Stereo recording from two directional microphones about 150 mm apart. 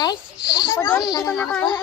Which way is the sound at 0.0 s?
30° left (ahead or behind).